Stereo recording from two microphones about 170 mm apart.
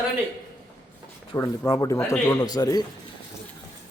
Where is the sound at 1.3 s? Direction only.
20° left (ahead or behind).